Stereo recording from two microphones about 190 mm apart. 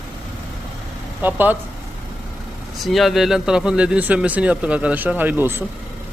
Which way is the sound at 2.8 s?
Centre (ahead or behind).